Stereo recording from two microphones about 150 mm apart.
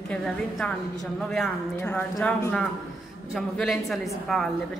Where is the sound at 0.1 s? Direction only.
5° left (ahead or behind).